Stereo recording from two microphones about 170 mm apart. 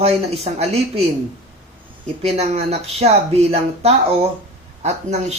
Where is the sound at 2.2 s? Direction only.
40° right (ahead or behind).